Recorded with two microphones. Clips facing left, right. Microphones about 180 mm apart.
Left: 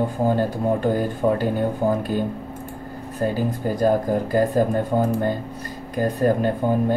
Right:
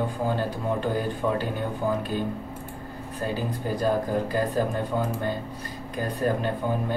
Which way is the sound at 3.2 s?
45° left (ahead or behind).